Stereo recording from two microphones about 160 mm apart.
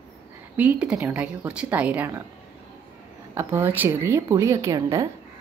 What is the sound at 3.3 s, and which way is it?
A woman's voice, 15° right (ahead or behind).